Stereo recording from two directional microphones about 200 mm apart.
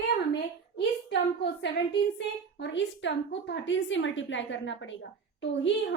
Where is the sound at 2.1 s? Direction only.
60° left (ahead or behind).